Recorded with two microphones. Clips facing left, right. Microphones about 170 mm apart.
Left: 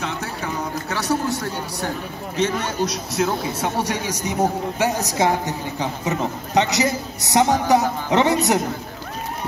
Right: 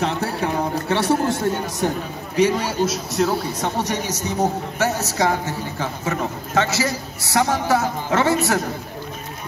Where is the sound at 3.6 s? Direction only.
10° left (ahead or behind).